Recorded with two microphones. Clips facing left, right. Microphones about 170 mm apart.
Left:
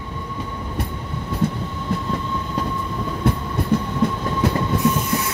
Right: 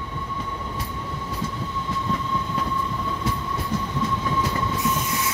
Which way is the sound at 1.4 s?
60° left (ahead or behind).